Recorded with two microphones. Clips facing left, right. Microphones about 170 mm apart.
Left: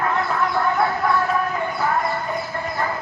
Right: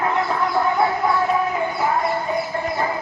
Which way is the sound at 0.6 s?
15° right (ahead or behind).